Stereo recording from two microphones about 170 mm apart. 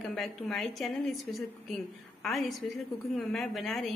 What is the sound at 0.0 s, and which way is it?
A woman's voice, centre (ahead or behind).